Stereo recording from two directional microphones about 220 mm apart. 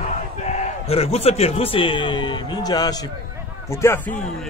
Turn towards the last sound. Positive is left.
turn(degrees=10)  # may be behind; listen again after turning